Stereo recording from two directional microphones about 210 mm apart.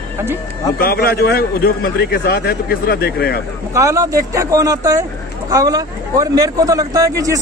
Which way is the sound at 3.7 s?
15° right (ahead or behind).